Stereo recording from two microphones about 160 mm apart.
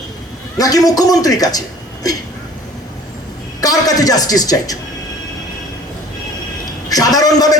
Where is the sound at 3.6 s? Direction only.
25° left (ahead or behind).